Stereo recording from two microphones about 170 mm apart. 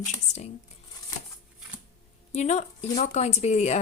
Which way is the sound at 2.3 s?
40° left (ahead or behind).